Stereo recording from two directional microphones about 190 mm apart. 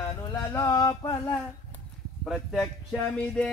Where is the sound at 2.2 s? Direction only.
Centre (ahead or behind).